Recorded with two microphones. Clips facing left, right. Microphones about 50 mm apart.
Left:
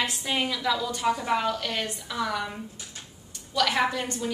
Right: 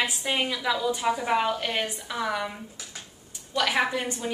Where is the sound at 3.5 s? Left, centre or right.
Centre.